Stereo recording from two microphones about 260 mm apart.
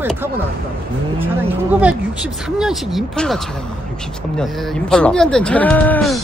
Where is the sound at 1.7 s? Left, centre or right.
Centre.